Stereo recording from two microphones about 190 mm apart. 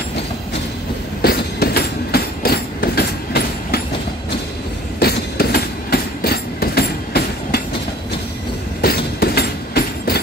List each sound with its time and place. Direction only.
1.2 s train: 55° left (ahead or behind)
5.0 s train: 55° left (ahead or behind)
8.8 s train: 55° left (ahead or behind)